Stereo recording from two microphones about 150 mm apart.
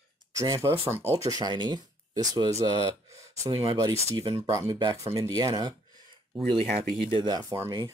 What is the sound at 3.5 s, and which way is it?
Speech, 25° right (ahead or behind).